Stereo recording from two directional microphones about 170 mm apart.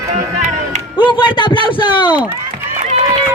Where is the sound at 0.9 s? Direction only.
30° left (ahead or behind).